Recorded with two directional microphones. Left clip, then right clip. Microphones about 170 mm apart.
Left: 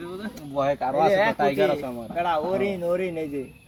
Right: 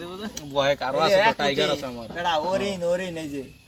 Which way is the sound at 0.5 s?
25° right (ahead or behind).